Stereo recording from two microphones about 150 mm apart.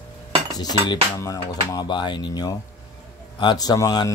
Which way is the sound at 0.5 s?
30° left (ahead or behind).